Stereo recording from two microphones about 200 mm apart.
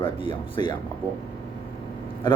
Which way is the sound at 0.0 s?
25° left (ahead or behind).